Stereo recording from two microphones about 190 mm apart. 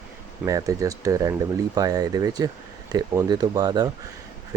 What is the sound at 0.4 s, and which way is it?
Speech, 20° right (ahead or behind).